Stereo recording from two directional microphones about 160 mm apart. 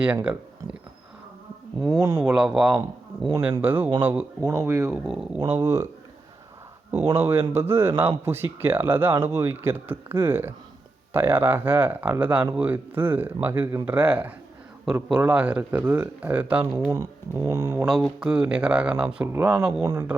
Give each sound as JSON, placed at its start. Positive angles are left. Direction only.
{"t": 0.0, "sound": "speech", "side_deg": -10}
{"t": 1.8, "sound": "speech", "side_deg": -25}
{"t": 2.2, "sound": "speech", "side_deg": -5}
{"t": 4.9, "sound": "speech", "side_deg": 0}
{"t": 5.4, "sound": "speech", "side_deg": -15}
{"t": 7.1, "sound": "speech", "side_deg": -15}
{"t": 16.9, "sound": "speech", "side_deg": -20}
{"t": 17.8, "sound": "speech", "side_deg": 0}
{"t": 19.8, "sound": "speech", "side_deg": -20}